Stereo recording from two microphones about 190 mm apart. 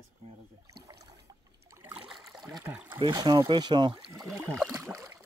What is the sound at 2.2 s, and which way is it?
Water, centre (ahead or behind).